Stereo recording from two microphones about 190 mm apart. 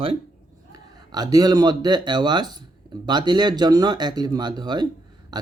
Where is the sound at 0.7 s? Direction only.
20° right (ahead or behind).